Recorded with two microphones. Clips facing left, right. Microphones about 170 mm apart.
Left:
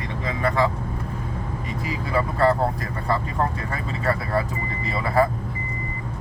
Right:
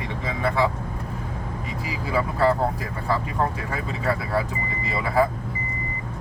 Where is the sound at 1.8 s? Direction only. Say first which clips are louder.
Left 1 dB; 5° right (ahead or behind).